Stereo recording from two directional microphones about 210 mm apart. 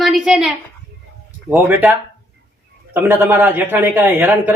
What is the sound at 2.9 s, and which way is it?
A man's voice, 10° right (ahead or behind).